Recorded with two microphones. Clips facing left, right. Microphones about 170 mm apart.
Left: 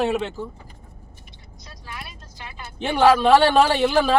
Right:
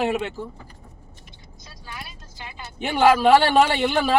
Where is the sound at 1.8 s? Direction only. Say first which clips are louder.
Left 1 dB; centre (ahead or behind).